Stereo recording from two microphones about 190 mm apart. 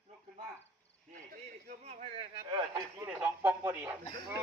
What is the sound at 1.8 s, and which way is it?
Speech, 35° right (ahead or behind).